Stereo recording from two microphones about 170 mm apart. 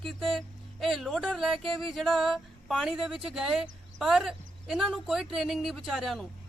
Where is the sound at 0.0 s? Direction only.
Centre (ahead or behind).